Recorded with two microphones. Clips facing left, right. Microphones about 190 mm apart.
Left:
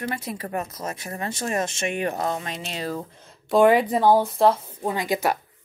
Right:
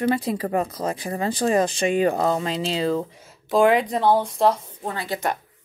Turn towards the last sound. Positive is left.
turn(degrees=10)  # may be behind; listen again after turning